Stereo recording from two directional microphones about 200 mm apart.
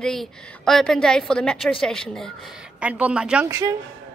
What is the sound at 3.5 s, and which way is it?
Speech, 15° right (ahead or behind).